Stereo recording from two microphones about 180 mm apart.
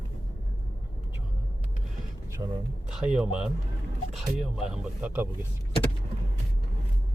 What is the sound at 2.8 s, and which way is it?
Speech, 5° right (ahead or behind).